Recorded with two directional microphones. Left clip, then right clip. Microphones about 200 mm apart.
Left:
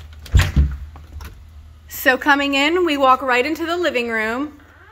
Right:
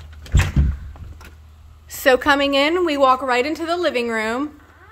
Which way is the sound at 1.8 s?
10° right (ahead or behind).